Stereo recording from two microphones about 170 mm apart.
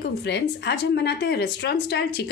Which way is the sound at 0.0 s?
85° left.